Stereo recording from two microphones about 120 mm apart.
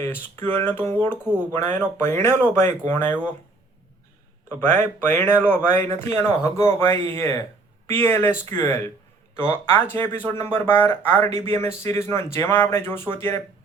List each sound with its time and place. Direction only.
0.0 s speech: 20° left (ahead or behind)
4.6 s speech: 15° left (ahead or behind)